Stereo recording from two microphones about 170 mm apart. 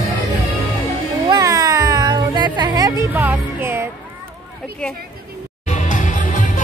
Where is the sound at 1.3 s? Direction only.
20° right (ahead or behind).